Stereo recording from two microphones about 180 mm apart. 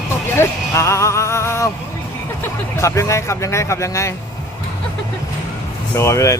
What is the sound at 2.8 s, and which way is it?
Speech, 15° left (ahead or behind).